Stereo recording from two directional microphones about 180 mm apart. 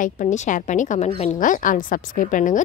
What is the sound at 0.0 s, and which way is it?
A woman's voice, 45° left (ahead or behind).